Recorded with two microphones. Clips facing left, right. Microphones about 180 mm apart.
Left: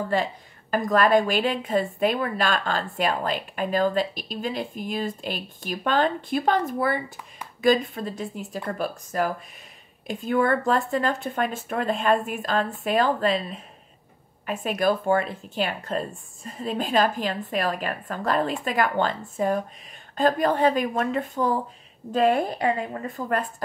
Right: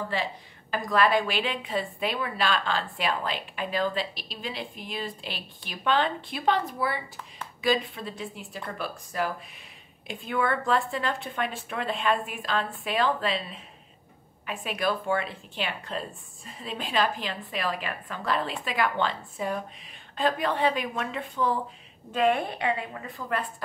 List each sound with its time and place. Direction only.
0.1 s a woman's voice: 45° left (ahead or behind)